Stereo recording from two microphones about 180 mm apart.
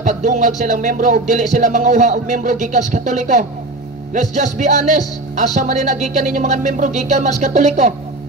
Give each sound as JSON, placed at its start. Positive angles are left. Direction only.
{"t": 0.0, "sound": "music", "side_deg": -40}
{"t": 4.1, "sound": "speech", "side_deg": -40}